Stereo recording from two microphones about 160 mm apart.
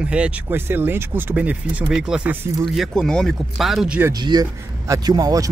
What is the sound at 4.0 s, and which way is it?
Speech, 25° right (ahead or behind).